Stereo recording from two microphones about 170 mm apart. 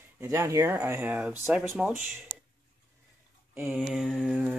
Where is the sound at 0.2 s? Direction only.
15° right (ahead or behind).